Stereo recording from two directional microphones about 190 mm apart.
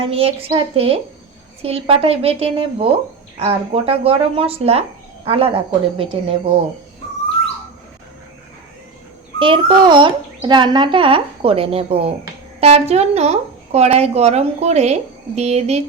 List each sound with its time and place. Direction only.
0.0 s a child's voice: 30° right (ahead or behind)
9.4 s a child's voice: 25° right (ahead or behind)